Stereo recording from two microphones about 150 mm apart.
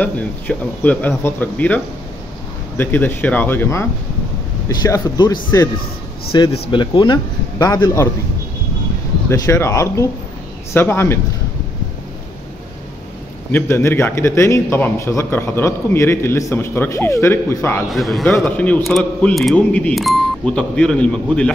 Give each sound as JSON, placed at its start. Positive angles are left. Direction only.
{"t": 0.0, "sound": "a man's voice", "side_deg": 10}
{"t": 2.8, "sound": "a man's voice", "side_deg": 15}
{"t": 9.3, "sound": "a man's voice", "side_deg": 20}
{"t": 13.5, "sound": "a man's voice", "side_deg": 15}
{"t": 17.9, "sound": "a man's voice", "side_deg": 0}